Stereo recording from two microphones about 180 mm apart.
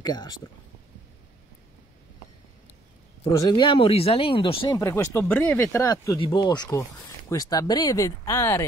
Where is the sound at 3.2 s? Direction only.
20° left (ahead or behind).